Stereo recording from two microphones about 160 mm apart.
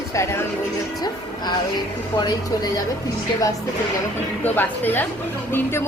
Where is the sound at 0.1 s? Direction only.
15° left (ahead or behind).